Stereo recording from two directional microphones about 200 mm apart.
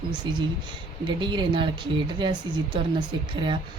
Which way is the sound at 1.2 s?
25° right (ahead or behind).